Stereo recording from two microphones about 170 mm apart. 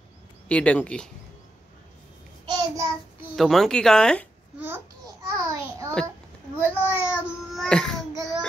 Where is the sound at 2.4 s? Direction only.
25° right (ahead or behind).